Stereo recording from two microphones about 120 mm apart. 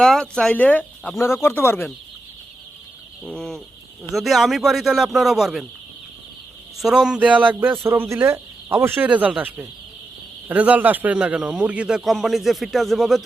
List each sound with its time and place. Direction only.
0.0 s speech: 5° left (ahead or behind)
3.2 s speech: 5° left (ahead or behind)
6.7 s a man's voice: 5° right (ahead or behind)